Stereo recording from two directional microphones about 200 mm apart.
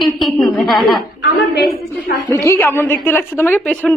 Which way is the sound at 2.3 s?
15° left (ahead or behind).